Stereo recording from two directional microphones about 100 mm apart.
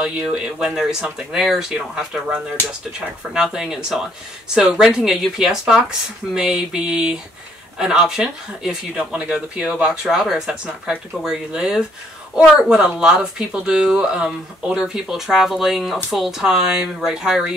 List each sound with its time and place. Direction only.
0.0 s speech: 10° right (ahead or behind)